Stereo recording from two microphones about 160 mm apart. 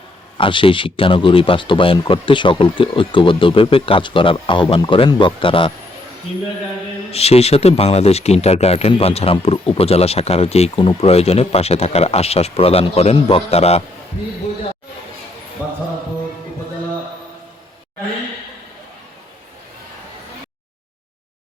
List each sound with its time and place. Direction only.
0.3 s speech: 35° left (ahead or behind)
7.1 s speech: 40° left (ahead or behind)